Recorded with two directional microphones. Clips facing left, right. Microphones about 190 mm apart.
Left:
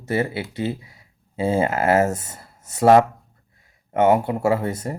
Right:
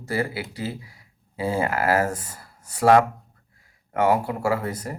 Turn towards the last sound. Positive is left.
turn(degrees=25)  # may be behind; listen again after turning